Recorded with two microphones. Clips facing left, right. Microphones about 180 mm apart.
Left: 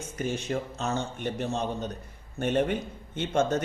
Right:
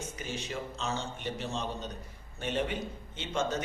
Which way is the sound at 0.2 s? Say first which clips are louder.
Left 10 dB; 55° left (ahead or behind).